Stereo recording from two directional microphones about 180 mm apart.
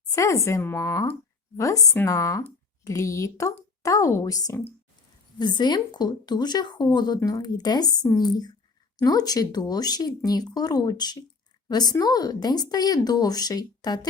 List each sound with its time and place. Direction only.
0.1 s speech: 15° left (ahead or behind)